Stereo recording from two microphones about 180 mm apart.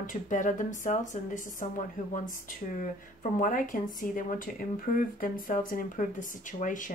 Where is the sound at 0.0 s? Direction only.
45° left (ahead or behind).